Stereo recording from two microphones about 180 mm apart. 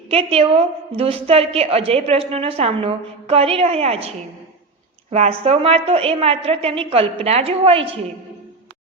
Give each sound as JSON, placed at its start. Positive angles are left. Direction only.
{"t": 0.1, "sound": "a woman's voice", "side_deg": -30}
{"t": 5.1, "sound": "a woman's voice", "side_deg": -35}